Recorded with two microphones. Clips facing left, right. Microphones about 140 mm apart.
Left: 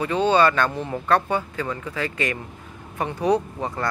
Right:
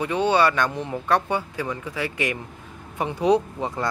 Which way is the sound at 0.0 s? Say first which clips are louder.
Left 1 dB; 15° right (ahead or behind).